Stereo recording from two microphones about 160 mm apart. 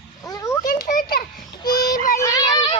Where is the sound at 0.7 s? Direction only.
60° left (ahead or behind).